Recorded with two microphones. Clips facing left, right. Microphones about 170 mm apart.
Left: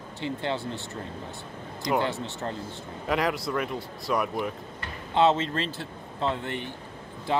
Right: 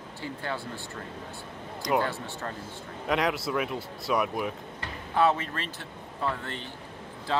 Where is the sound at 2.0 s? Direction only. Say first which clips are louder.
Left 1 dB; 20° left (ahead or behind).